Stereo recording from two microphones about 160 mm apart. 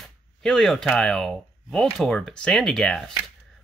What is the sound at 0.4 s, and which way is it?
Speech, 5° left (ahead or behind).